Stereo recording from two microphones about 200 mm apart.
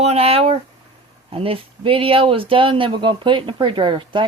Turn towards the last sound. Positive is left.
turn(degrees=-25)  # may be behind; listen again after turning